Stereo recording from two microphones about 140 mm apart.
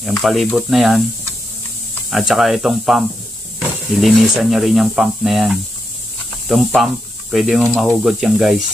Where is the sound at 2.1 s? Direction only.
Centre (ahead or behind).